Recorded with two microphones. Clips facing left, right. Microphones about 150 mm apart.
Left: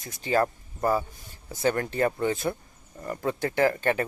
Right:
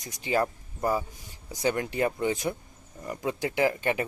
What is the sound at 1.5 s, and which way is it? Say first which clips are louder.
Speech: left 2 dB; 15° right (ahead or behind).